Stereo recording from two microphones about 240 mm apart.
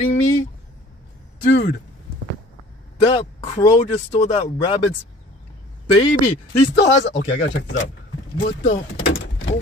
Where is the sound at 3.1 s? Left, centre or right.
Left.